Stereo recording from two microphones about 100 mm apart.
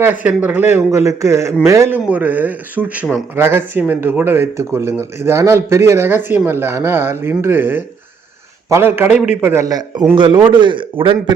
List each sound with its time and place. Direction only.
0.0 s a man's voice: 15° right (ahead or behind)
2.0 s speech: 15° right (ahead or behind)
9.5 s speech: 30° right (ahead or behind)
9.7 s a man's voice: 45° right (ahead or behind)